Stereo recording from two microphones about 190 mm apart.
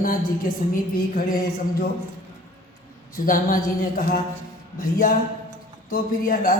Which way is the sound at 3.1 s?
50° left (ahead or behind).